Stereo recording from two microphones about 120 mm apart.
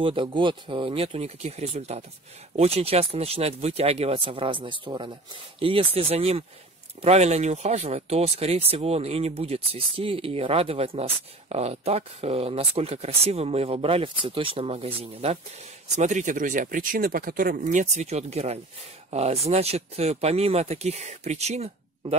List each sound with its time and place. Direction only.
0.0 s speech: 45° right (ahead or behind)
16.0 s speech: 90° right
17.6 s speech: 75° right (ahead or behind)